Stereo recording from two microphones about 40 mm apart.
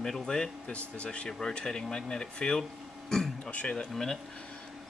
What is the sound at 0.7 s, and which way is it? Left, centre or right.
Speech, left.